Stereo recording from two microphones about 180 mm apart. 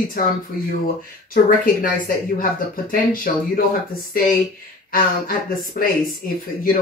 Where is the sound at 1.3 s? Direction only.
50° left (ahead or behind).